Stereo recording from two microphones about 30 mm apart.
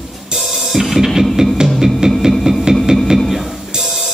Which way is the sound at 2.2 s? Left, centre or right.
Centre.